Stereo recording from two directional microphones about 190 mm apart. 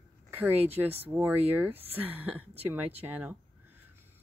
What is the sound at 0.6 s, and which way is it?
Speech, 30° right (ahead or behind).